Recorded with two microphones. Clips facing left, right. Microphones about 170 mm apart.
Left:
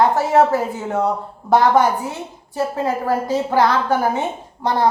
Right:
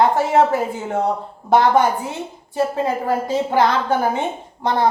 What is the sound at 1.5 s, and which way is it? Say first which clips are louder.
A woman's voice: even; 25° right (ahead or behind).